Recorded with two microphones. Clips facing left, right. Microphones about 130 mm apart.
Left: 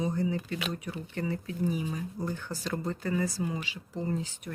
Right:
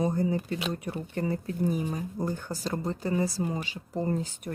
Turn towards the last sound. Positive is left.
turn(degrees=-45)  # may be behind; listen again after turning